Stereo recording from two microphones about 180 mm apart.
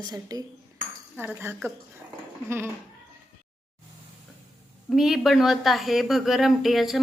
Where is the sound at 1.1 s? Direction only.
10° right (ahead or behind).